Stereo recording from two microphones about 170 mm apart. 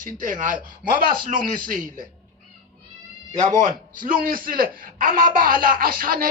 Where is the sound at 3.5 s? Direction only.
50° right (ahead or behind).